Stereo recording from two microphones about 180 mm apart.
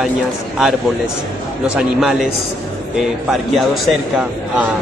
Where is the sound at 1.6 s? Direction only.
5° right (ahead or behind).